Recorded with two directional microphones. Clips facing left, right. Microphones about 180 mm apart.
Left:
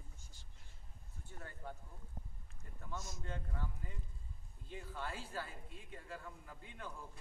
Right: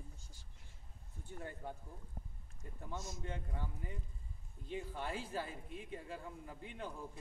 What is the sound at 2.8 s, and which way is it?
Speech, 25° right (ahead or behind).